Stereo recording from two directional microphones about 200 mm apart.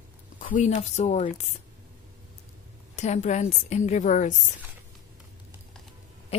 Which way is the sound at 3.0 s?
35° left (ahead or behind).